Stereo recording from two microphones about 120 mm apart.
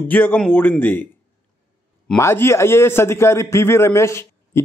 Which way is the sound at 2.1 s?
20° left (ahead or behind).